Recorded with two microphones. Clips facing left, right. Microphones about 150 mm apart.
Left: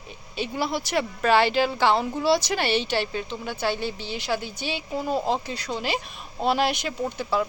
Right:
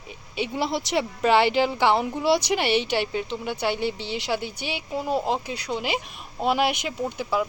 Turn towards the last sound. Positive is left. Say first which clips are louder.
# even
turn(degrees=-10)  # may be behind; listen again after turning